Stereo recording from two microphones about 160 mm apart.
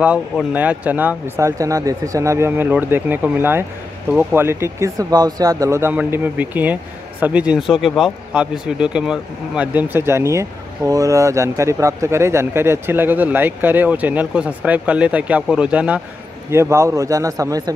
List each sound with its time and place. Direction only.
0.0 s a man's voice: 10° right (ahead or behind)